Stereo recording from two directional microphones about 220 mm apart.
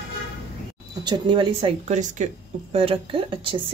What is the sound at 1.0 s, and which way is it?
Speech, 20° right (ahead or behind).